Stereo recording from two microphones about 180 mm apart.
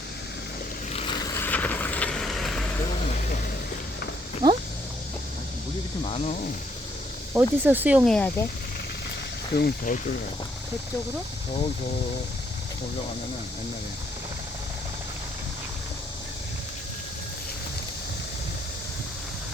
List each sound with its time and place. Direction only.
0.9 s vehicle: 25° left (ahead or behind)
1.4 s vehicle: 10° left (ahead or behind)
4.4 s a sound: 20° right (ahead or behind)
6.0 s speech: 35° left (ahead or behind)
7.3 s speech: 10° right (ahead or behind)
8.0 s speech: 5° left (ahead or behind)
9.6 s speech: 55° left (ahead or behind)